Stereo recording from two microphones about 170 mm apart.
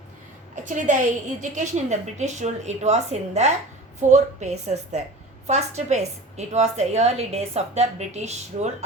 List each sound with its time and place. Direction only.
0.5 s a woman's voice: 45° right (ahead or behind)